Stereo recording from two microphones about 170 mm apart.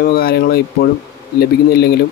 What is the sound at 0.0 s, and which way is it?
Speech, 60° left (ahead or behind).